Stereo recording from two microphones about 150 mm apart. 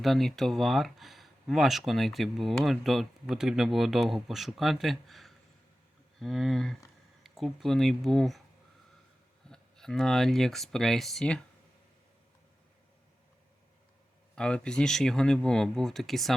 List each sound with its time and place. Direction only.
0.0 s speech: centre (ahead or behind)
9.5 s speech: 5° left (ahead or behind)
14.3 s speech: 5° left (ahead or behind)